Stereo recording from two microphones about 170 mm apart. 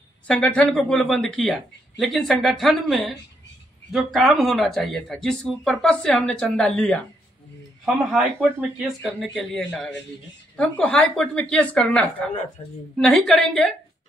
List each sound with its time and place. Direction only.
0.3 s a woman's voice: 10° left (ahead or behind)
12.6 s a woman's voice: 30° left (ahead or behind)
12.9 s speech: 5° left (ahead or behind)